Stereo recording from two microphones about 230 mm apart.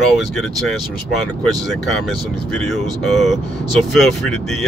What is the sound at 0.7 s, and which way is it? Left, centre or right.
Speech, centre.